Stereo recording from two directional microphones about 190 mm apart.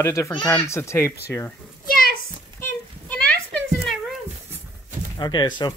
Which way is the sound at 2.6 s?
5° left (ahead or behind).